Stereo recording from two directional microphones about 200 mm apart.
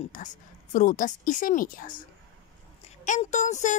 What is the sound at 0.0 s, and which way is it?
A woman's voice, 40° left (ahead or behind).